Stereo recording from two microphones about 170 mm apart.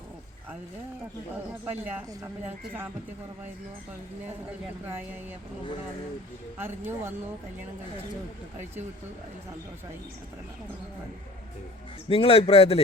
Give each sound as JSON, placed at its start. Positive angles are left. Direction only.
{"t": 1.6, "sound": "speech", "side_deg": -10}
{"t": 6.6, "sound": "speech", "side_deg": -15}
{"t": 12.0, "sound": "a man's voice", "side_deg": 35}